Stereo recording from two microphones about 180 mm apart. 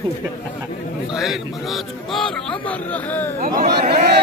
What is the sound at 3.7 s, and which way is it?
Speech, 65° right (ahead or behind).